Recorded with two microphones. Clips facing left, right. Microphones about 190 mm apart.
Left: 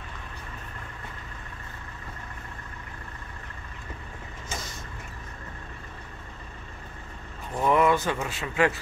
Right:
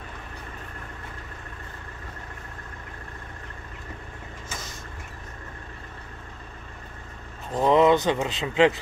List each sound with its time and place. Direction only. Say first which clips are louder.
7.5 s speech: right 4 dB; 20° right (ahead or behind)